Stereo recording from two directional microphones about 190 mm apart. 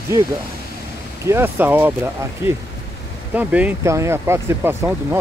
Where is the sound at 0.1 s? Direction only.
15° right (ahead or behind).